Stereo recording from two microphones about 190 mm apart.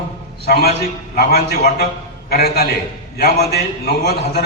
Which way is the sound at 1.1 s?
55° left (ahead or behind).